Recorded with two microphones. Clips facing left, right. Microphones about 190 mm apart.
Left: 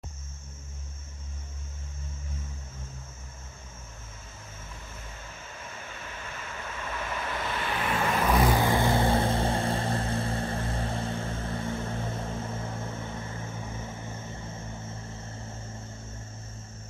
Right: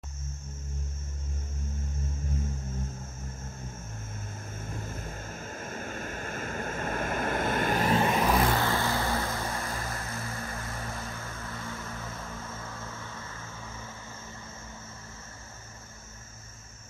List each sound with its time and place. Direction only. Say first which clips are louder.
4.6 s vehicle: right 9 dB; 50° right (ahead or behind)
8.2 s vehicle: left 1 dB; centre (ahead or behind)
8.5 s vehicle: left 4 dB; 15° left (ahead or behind)